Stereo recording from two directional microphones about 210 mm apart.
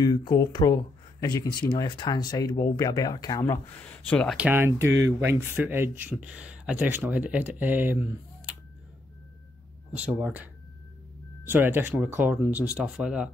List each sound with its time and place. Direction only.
0.0 s speech: 20° left (ahead or behind)
4.4 s speech: 10° right (ahead or behind)
9.9 s speech: 5° right (ahead or behind)